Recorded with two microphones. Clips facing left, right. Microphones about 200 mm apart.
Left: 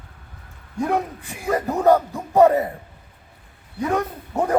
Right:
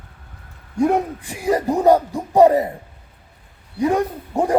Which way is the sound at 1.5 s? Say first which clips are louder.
Right 2 dB; 15° right (ahead or behind).